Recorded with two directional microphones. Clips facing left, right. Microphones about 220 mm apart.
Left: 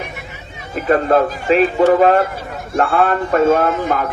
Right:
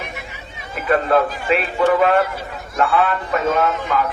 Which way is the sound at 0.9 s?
40° left (ahead or behind).